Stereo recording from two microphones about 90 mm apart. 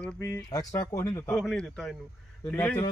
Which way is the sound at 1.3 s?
5° left (ahead or behind).